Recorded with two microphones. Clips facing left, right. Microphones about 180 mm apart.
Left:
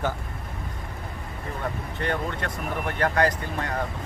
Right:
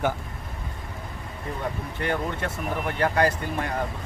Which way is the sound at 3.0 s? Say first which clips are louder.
Even; 10° right (ahead or behind).